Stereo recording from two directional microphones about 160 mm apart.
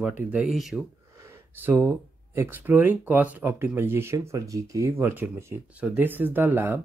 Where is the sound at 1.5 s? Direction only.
15° right (ahead or behind).